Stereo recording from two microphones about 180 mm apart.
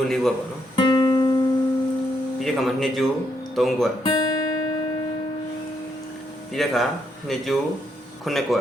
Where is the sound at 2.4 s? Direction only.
Centre (ahead or behind).